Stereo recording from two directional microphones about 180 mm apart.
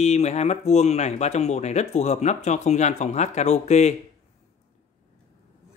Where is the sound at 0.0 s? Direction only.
35° left (ahead or behind).